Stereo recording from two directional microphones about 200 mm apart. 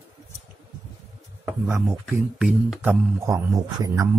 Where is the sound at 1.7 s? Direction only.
10° right (ahead or behind).